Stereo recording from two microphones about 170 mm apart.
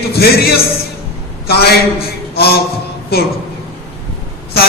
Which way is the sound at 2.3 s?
65° left (ahead or behind).